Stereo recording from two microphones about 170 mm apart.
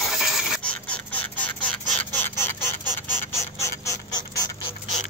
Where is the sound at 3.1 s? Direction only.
15° left (ahead or behind).